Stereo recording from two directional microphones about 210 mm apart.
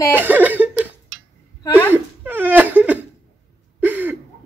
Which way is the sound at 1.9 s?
10° right (ahead or behind).